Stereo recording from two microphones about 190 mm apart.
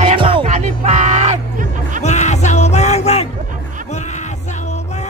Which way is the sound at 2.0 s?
35° left (ahead or behind).